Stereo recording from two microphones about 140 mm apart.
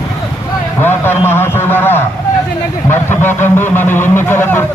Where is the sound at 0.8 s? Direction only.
15° left (ahead or behind).